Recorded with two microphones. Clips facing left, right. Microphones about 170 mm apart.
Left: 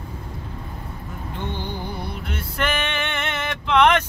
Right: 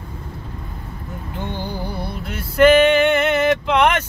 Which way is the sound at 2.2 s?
5° right (ahead or behind).